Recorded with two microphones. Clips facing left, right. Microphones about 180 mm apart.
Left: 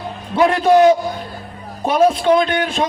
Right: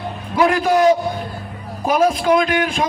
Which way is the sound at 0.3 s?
30° left (ahead or behind).